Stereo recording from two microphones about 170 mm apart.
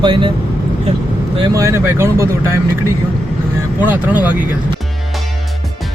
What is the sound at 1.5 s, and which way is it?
Speech, 15° right (ahead or behind).